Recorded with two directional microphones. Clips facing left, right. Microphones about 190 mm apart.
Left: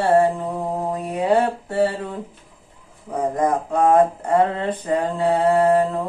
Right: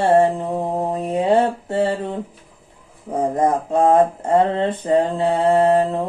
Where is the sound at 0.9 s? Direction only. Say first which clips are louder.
Right 2 dB; 25° right (ahead or behind).